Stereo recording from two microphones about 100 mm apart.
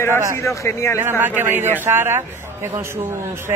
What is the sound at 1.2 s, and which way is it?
A man's voice, 20° right (ahead or behind).